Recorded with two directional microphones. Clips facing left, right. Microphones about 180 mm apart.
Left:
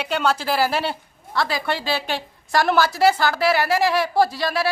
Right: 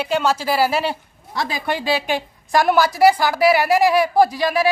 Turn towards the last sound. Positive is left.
turn(degrees=-15)  # may be behind; listen again after turning